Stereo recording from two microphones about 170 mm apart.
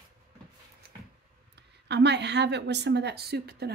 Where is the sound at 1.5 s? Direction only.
90° right.